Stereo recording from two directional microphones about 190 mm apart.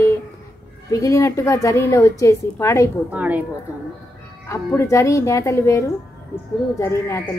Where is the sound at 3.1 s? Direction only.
10° right (ahead or behind).